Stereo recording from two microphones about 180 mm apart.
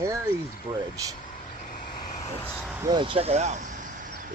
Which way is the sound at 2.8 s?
25° right (ahead or behind).